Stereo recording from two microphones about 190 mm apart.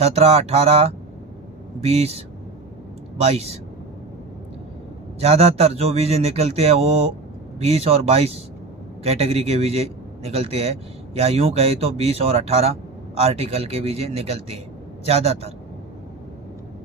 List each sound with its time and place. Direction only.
0.0 s a man's voice: 35° right (ahead or behind)
5.2 s a man's voice: 35° right (ahead or behind)